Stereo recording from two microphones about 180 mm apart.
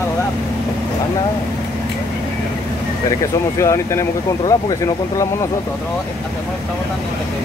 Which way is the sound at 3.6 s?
15° left (ahead or behind).